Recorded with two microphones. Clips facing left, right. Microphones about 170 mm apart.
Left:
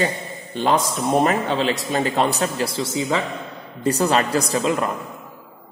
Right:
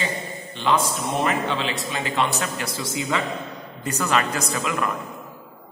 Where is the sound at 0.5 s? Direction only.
40° left (ahead or behind).